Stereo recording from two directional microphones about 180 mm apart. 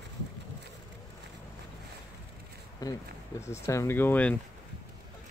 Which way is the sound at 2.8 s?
20° left (ahead or behind).